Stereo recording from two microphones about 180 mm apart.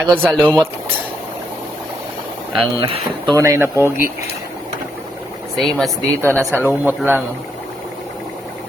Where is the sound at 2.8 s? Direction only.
30° right (ahead or behind).